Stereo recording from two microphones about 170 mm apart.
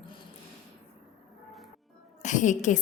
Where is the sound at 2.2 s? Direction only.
45° left (ahead or behind).